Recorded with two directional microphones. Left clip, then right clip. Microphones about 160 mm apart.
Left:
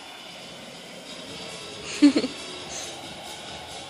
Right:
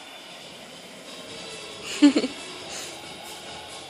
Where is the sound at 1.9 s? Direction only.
15° right (ahead or behind).